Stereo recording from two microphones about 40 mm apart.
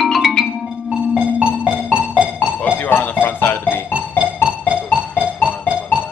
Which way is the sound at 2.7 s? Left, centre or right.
Left.